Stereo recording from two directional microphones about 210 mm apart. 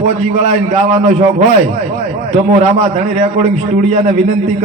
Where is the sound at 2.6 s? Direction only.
30° right (ahead or behind).